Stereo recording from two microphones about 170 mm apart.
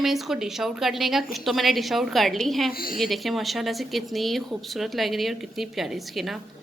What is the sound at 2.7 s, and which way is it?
Speech, 60° left (ahead or behind).